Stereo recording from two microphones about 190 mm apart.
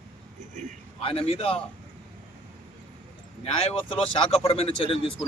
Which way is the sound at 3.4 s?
30° left (ahead or behind).